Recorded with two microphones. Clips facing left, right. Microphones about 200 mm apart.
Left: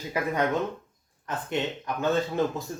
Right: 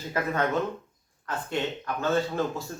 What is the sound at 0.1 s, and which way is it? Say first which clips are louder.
A man's voice: even; 15° left (ahead or behind).